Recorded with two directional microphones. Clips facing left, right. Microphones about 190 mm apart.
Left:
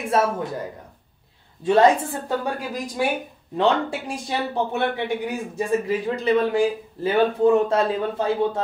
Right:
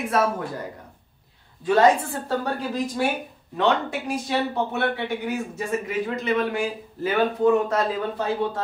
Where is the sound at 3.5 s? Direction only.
30° left (ahead or behind).